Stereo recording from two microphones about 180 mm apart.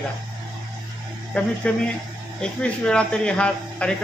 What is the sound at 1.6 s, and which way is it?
A man's voice, 5° left (ahead or behind).